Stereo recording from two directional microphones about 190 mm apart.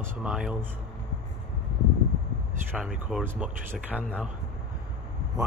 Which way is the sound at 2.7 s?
5° right (ahead or behind).